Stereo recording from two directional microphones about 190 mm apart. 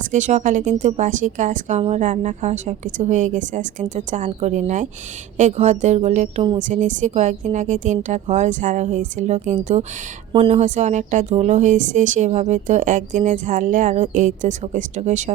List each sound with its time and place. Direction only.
0.1 s speech: 40° right (ahead or behind)